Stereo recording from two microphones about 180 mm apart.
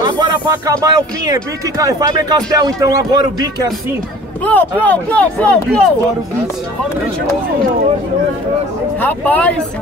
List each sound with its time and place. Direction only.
0.0 s speech: 25° right (ahead or behind)
4.5 s speech: 10° left (ahead or behind)
9.0 s speech: 10° left (ahead or behind)